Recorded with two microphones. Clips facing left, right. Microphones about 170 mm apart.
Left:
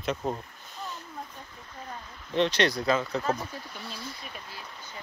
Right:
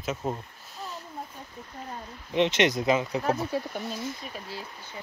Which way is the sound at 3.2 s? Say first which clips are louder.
Right 4 dB; 65° right (ahead or behind).